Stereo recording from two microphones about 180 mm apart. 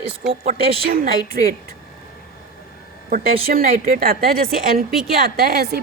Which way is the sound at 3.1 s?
55° right (ahead or behind).